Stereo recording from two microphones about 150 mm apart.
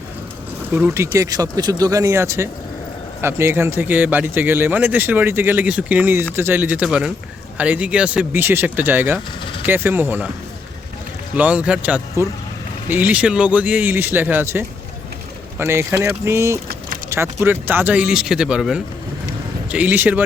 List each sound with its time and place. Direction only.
0.7 s a man's voice: 10° right (ahead or behind)
11.3 s a man's voice: 10° right (ahead or behind)